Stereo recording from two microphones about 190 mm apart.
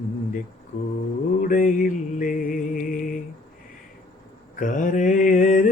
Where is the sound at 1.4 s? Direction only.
45° left (ahead or behind).